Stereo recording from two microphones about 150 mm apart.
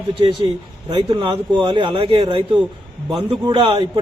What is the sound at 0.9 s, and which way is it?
A man's voice, 30° right (ahead or behind).